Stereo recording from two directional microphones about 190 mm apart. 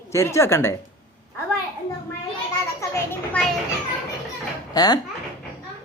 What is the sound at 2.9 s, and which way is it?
Children playing, 10° left (ahead or behind).